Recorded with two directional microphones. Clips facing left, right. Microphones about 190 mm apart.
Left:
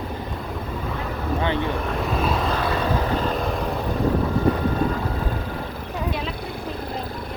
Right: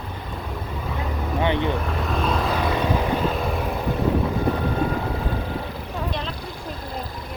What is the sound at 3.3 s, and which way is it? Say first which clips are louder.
Vehicle: left 1 dB; 5° right (ahead or behind).